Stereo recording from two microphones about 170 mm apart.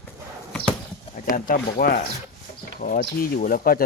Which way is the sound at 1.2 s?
55° left (ahead or behind).